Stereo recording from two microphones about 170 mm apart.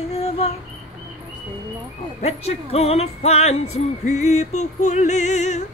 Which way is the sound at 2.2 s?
35° left (ahead or behind).